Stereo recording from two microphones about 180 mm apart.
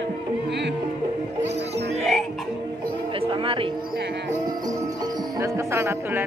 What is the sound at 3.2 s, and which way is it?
Music, 30° right (ahead or behind).